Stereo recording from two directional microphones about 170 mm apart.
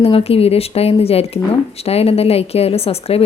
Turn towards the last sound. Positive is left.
turn(degrees=35)  # may be behind; listen again after turning